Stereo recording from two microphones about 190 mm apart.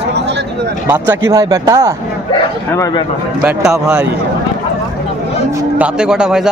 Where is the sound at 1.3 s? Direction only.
20° right (ahead or behind).